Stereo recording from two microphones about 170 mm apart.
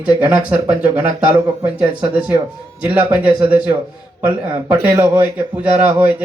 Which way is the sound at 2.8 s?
10° right (ahead or behind).